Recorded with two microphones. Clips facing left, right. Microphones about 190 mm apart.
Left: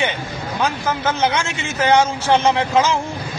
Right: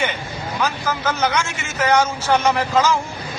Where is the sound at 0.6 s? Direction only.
25° left (ahead or behind).